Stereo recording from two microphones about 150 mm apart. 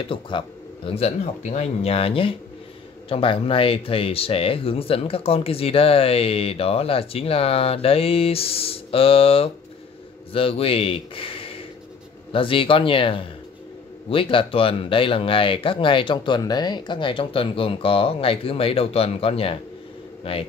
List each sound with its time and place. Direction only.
0.0 s speech: 35° left (ahead or behind)